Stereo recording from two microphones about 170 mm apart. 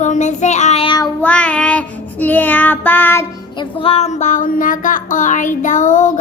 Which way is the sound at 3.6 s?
30° left (ahead or behind).